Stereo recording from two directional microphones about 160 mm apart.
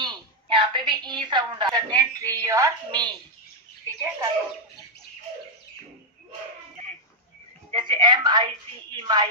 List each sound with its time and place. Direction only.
0.0 s a sound: 30° right (ahead or behind)
2.0 s speech: 20° right (ahead or behind)
7.7 s speech: 30° right (ahead or behind)